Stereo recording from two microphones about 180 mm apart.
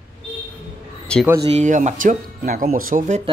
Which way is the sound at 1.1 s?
5° left (ahead or behind).